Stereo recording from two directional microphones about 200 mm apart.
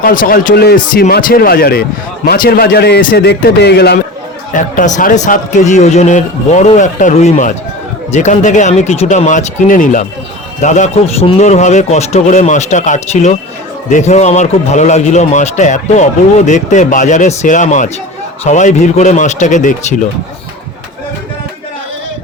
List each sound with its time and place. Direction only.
0.0 s speech: 45° left (ahead or behind)
4.5 s a man's voice: 40° left (ahead or behind)